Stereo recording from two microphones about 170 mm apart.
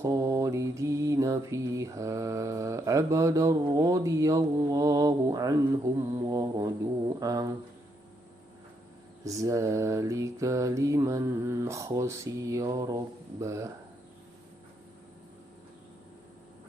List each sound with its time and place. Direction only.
0.0 s mantra: 20° right (ahead or behind)
9.2 s mantra: 20° right (ahead or behind)